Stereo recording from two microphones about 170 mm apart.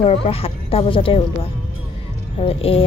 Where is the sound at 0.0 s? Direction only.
35° left (ahead or behind).